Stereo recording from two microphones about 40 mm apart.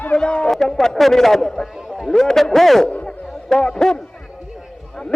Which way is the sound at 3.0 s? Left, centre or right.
Centre.